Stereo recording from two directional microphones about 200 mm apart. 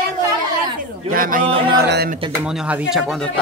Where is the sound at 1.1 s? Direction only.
45° right (ahead or behind).